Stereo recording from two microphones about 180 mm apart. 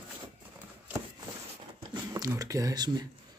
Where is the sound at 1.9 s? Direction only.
20° right (ahead or behind).